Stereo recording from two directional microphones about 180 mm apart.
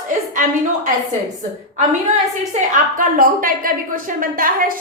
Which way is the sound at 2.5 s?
45° right (ahead or behind).